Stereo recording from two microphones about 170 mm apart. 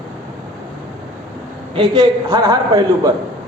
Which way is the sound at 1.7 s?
25° right (ahead or behind).